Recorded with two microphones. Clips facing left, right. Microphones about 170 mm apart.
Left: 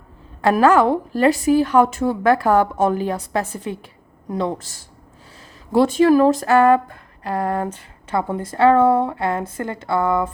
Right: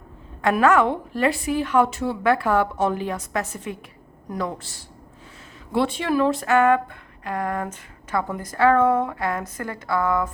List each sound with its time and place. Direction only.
0.4 s speech: 35° left (ahead or behind)
4.5 s speech: 45° left (ahead or behind); by 10.3 s 25° left (ahead or behind)